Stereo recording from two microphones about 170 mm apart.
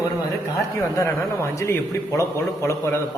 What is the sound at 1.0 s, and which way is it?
Speech, 15° left (ahead or behind).